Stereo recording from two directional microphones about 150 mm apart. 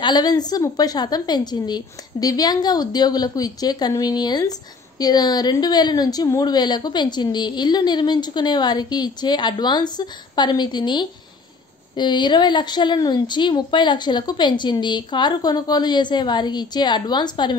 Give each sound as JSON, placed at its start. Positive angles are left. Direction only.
{"t": 0.0, "sound": "a woman's voice", "side_deg": 25}